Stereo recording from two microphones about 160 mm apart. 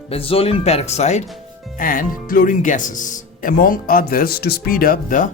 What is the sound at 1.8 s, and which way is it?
Speech, 60° left (ahead or behind).